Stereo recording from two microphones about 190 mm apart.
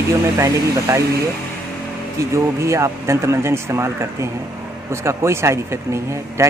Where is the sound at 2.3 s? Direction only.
15° right (ahead or behind).